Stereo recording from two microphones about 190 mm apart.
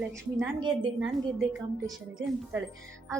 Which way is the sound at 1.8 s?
20° right (ahead or behind).